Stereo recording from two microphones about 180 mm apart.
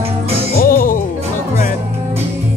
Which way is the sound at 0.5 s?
50° left (ahead or behind).